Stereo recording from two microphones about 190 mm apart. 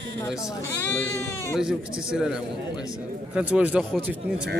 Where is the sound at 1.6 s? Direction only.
5° right (ahead or behind).